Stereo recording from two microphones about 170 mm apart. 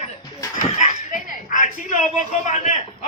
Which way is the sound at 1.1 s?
50° left (ahead or behind).